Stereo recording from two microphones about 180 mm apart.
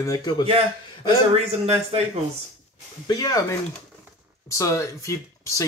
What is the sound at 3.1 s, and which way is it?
Speech, 20° left (ahead or behind).